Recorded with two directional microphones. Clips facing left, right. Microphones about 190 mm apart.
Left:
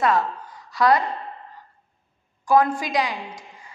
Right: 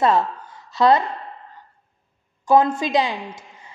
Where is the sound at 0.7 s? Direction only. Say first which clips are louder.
Right 3 dB; 25° right (ahead or behind).